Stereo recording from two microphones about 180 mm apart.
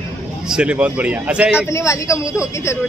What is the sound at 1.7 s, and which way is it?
Speech, 15° left (ahead or behind).